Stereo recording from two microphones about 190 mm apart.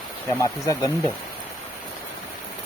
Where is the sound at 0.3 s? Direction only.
15° left (ahead or behind).